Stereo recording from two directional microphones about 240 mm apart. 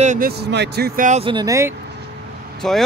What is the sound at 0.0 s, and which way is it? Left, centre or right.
Speech, right.